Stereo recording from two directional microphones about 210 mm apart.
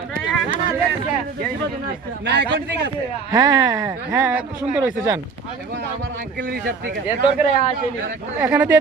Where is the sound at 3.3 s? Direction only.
15° right (ahead or behind).